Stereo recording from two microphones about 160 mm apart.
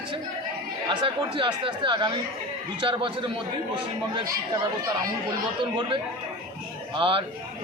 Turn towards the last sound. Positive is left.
turn(degrees=-35)  # may be behind; listen again after turning